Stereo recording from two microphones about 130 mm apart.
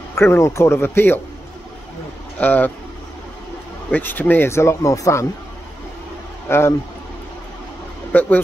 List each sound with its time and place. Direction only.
0.1 s speech: 20° left (ahead or behind)
2.3 s speech: 10° left (ahead or behind)
3.9 s speech: 15° left (ahead or behind)
6.5 s speech: 20° left (ahead or behind)
8.1 s speech: 15° left (ahead or behind)